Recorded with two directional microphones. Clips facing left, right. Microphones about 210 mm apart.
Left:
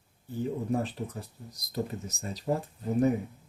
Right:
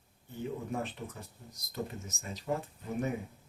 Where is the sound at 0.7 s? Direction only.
35° left (ahead or behind).